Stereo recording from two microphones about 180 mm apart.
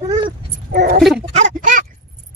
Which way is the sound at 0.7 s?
50° right (ahead or behind).